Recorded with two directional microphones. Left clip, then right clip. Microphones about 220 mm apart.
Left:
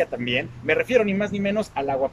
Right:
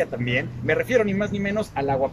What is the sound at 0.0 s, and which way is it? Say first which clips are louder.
Speech: left 1 dB; centre (ahead or behind).